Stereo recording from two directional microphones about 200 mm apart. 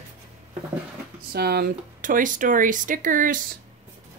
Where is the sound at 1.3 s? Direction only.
50° right (ahead or behind).